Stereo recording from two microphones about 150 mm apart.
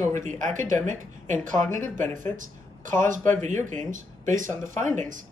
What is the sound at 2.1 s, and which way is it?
Speech, 60° right (ahead or behind).